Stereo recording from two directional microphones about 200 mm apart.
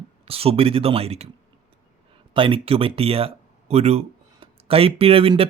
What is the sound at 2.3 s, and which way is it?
Speech, 25° right (ahead or behind).